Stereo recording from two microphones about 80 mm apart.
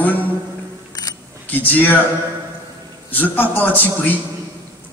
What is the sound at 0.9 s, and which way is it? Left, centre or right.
Camera, left.